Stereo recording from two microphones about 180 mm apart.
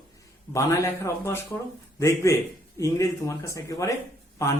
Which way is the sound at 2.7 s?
15° left (ahead or behind).